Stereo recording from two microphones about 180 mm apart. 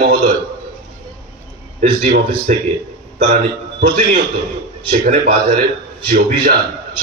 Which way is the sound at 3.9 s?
50° right (ahead or behind).